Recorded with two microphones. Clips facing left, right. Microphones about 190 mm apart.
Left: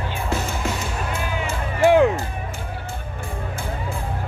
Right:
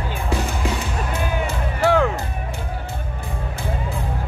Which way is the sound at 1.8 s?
15° left (ahead or behind).